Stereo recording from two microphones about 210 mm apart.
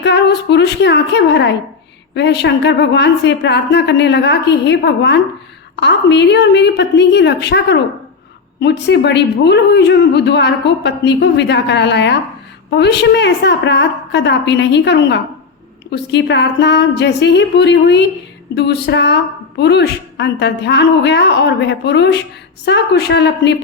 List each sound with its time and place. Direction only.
0.0 s a woman's voice: 55° left (ahead or behind)